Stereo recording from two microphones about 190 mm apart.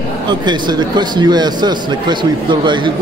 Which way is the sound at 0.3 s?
25° right (ahead or behind).